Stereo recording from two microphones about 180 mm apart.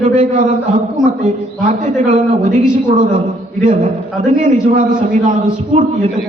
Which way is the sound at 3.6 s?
40° right (ahead or behind).